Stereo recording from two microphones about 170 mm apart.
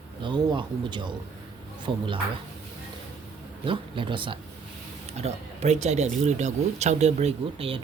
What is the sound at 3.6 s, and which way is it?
Speech, 30° right (ahead or behind).